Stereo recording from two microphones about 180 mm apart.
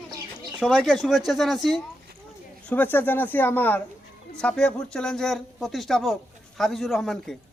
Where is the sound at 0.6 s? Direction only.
5° left (ahead or behind).